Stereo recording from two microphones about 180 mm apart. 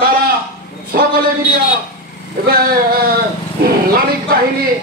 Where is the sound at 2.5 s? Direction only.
55° right (ahead or behind).